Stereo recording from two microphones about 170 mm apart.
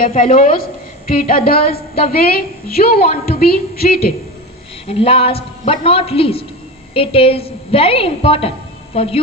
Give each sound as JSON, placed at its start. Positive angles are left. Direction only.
{"t": 0.0, "sound": "a woman's voice", "side_deg": 55}
{"t": 4.8, "sound": "a woman's voice", "side_deg": 35}